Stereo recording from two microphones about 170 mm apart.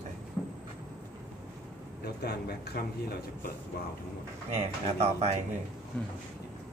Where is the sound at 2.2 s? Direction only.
70° left (ahead or behind).